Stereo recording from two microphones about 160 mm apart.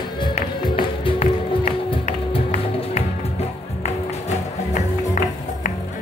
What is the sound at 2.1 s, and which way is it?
Music, 45° left (ahead or behind).